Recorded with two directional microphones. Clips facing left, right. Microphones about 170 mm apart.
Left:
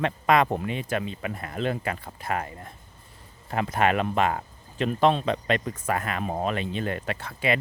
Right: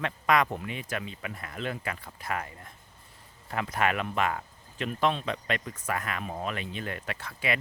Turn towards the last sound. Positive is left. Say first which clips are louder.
# left 5 dB
turn(degrees=30)  # may be behind; listen again after turning